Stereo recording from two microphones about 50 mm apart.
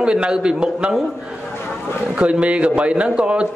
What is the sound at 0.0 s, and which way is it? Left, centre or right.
Speech, centre.